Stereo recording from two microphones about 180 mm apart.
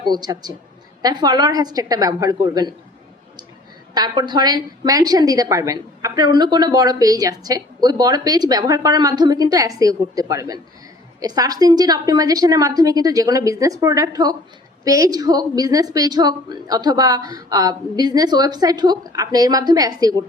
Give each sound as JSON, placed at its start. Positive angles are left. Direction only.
{"t": 0.0, "sound": "a woman's voice", "side_deg": -20}
{"t": 3.9, "sound": "a woman's voice", "side_deg": -25}